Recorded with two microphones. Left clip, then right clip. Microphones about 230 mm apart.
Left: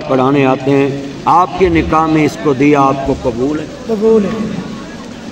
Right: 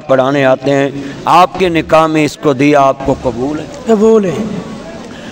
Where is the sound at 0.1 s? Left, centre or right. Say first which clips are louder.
Right 2 dB; right.